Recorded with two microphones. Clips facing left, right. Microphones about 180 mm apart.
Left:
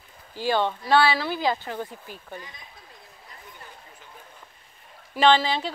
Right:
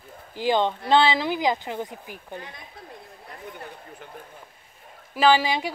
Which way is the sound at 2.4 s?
60° right (ahead or behind).